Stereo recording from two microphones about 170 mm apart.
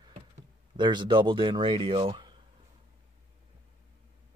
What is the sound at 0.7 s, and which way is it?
Speech, 25° right (ahead or behind).